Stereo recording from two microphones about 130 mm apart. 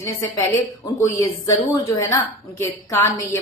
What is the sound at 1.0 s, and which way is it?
A woman's voice, 25° left (ahead or behind).